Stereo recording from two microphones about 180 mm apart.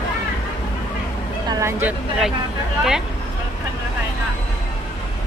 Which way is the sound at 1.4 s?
15° right (ahead or behind).